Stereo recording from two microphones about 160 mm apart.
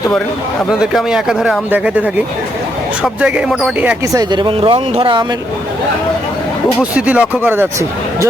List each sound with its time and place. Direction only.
0.7 s speech: 5° right (ahead or behind)
4.1 s speech: 25° right (ahead or behind)
6.9 s speech: 10° right (ahead or behind)